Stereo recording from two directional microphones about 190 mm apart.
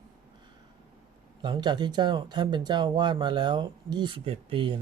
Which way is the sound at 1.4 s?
25° right (ahead or behind).